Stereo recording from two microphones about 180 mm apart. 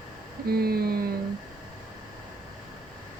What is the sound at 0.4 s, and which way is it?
Speech, 60° right (ahead or behind).